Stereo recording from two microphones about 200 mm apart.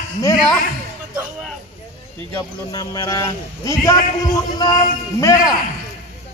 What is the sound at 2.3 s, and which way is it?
A man's voice, 20° left (ahead or behind).